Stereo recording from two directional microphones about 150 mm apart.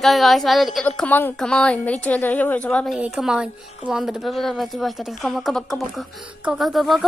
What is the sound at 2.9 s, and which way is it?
Speech, 5° right (ahead or behind).